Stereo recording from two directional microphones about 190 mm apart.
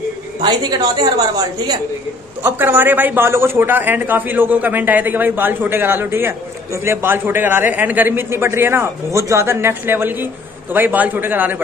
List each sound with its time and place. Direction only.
0.4 s a woman's voice: 20° right (ahead or behind)
2.4 s speech: 10° right (ahead or behind)